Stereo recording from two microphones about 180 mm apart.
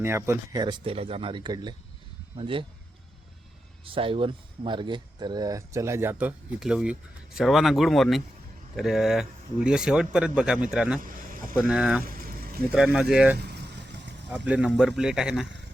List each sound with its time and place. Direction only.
0.0 s speech: 15° right (ahead or behind)
3.8 s speech: 30° right (ahead or behind); by 11.0 s 5° right (ahead or behind)
11.0 s a sound: 50° right (ahead or behind)
11.7 s speech: 5° right (ahead or behind)
12.0 s vehicle: 55° right (ahead or behind)
12.7 s speech: 5° right (ahead or behind)
13.4 s vehicle: 70° right (ahead or behind)
14.3 s speech: 5° right (ahead or behind)